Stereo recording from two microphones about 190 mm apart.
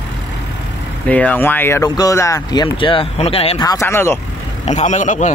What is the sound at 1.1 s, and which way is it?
Speech, 5° left (ahead or behind).